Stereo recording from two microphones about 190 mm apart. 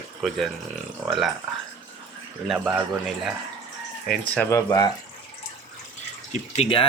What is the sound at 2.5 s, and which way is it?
Speech, 5° right (ahead or behind).